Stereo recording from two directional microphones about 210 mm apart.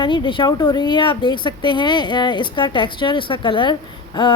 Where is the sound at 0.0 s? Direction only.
20° left (ahead or behind).